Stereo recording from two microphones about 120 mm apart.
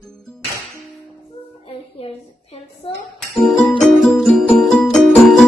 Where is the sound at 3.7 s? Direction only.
Centre (ahead or behind).